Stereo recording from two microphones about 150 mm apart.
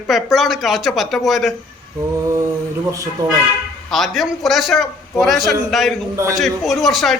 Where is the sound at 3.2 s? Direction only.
25° right (ahead or behind).